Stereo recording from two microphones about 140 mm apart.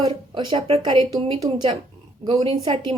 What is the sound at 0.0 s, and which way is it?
A woman's voice, 35° right (ahead or behind).